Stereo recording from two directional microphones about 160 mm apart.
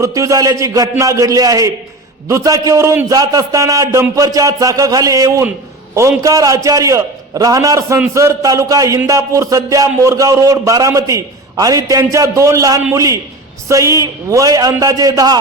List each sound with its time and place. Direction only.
0.0 s a man's voice: 20° right (ahead or behind)